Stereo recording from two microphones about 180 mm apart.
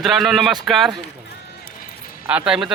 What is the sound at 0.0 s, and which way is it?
Speech, centre (ahead or behind).